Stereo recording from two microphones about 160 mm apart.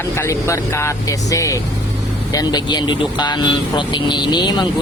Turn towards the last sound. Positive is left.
turn(degrees=25)  # may be behind; listen again after turning